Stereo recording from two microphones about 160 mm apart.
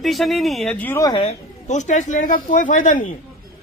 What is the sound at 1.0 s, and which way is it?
Speech, 30° left (ahead or behind).